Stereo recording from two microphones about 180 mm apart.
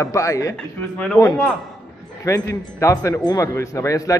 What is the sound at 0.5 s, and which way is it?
Speech, 5° left (ahead or behind).